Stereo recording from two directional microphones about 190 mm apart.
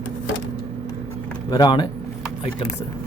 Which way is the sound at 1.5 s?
20° left (ahead or behind).